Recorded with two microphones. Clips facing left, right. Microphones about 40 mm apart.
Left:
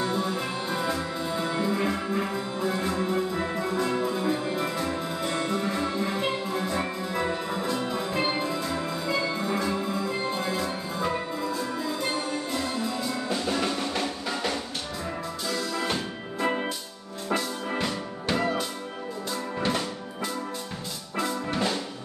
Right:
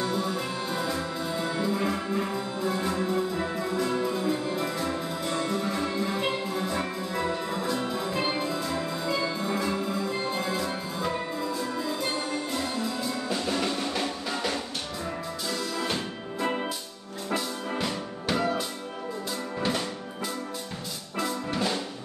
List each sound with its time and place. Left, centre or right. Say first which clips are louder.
0.0 s music: left 1 dB; centre
15.7 s music: left 1 dB; centre
21.2 s music: left 1 dB; centre